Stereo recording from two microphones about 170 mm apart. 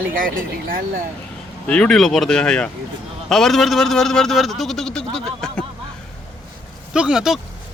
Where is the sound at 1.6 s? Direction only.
5° left (ahead or behind).